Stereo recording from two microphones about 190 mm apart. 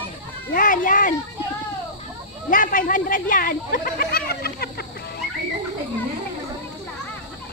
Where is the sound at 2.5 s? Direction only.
45° left (ahead or behind).